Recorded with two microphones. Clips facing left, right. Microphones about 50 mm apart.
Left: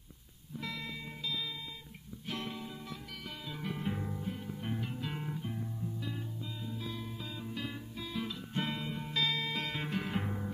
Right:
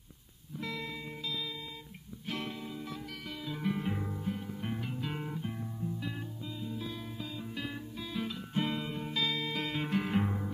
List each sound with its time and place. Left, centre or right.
0.6 s music: centre
3.5 s guitar: centre
4.6 s music: centre